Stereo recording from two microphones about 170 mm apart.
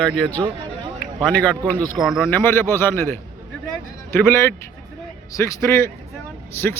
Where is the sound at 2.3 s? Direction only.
15° left (ahead or behind).